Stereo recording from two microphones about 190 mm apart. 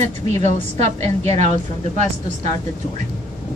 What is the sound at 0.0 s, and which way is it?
A woman's voice, 35° right (ahead or behind).